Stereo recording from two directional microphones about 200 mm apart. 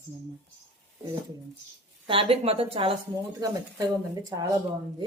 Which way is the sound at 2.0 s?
25° right (ahead or behind).